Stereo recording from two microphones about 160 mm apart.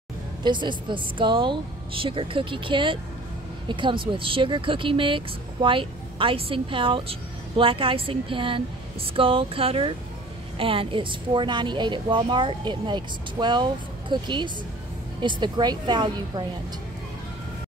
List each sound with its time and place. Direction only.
0.4 s a woman's voice: 30° right (ahead or behind)